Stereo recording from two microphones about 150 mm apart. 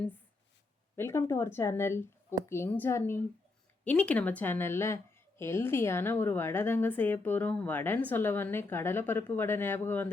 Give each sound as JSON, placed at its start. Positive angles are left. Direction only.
{"t": 0.9, "sound": "a woman's voice", "side_deg": 15}